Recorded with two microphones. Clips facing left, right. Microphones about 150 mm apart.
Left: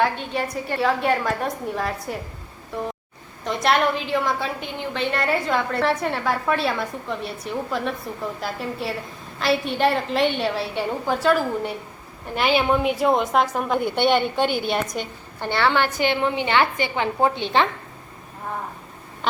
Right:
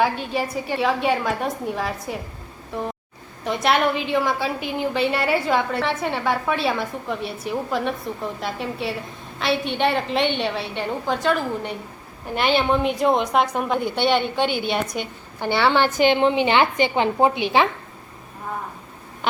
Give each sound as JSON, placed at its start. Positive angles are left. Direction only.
{"t": 0.0, "sound": "a woman's voice", "side_deg": -5}
{"t": 3.4, "sound": "a woman's voice", "side_deg": 0}
{"t": 13.8, "sound": "a woman's voice", "side_deg": 50}
{"t": 14.6, "sound": "a woman's voice", "side_deg": 0}
{"t": 15.4, "sound": "a woman's voice", "side_deg": -10}
{"t": 19.2, "sound": "a sound", "side_deg": 0}